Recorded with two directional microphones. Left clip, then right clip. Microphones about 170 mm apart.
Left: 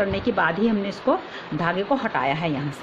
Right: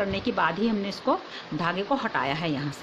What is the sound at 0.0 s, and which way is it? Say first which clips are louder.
Speech: left 4 dB; 10° right (ahead or behind).